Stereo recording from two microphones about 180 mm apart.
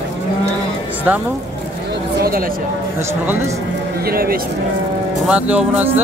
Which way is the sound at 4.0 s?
55° right (ahead or behind).